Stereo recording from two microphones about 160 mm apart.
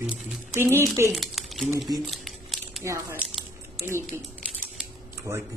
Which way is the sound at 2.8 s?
15° right (ahead or behind).